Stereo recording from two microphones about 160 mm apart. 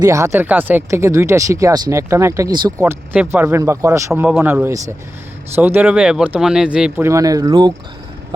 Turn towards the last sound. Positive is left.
turn(degrees=-25)  # may be behind; listen again after turning